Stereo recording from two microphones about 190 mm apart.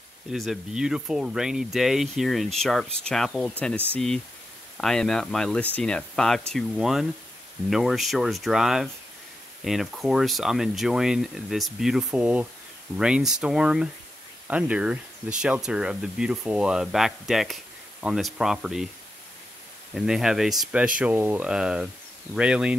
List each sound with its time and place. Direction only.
0.3 s speech: centre (ahead or behind)
19.9 s speech: centre (ahead or behind)